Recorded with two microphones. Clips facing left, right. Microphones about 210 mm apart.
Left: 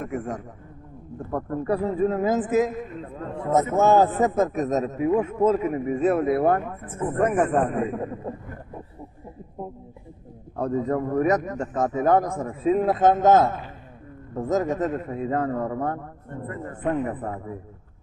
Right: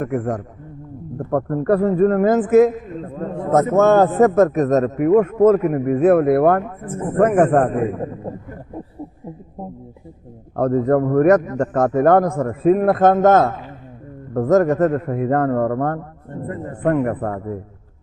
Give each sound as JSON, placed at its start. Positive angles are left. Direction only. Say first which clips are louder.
{"t": 0.0, "sound": "a man's voice", "louder": "right 8 dB", "side_deg": -60}
{"t": 3.0, "sound": "a sound", "louder": "right 6 dB", "side_deg": -40}
{"t": 3.5, "sound": "a man's voice", "louder": "right 5 dB", "side_deg": -65}
{"t": 10.6, "sound": "a man's voice", "louder": "right 8 dB", "side_deg": -60}